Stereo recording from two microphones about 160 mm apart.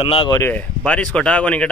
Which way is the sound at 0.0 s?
35° left (ahead or behind).